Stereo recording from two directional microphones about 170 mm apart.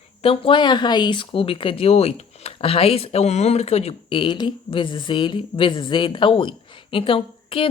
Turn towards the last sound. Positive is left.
turn(degrees=30)  # may be behind; listen again after turning